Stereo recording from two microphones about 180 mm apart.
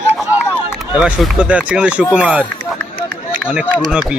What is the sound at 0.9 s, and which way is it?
Speech, 5° right (ahead or behind).